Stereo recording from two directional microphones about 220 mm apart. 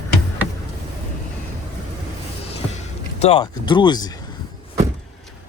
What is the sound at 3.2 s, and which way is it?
Speech, 25° left (ahead or behind).